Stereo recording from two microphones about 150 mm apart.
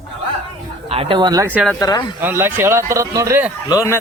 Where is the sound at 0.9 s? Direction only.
40° right (ahead or behind).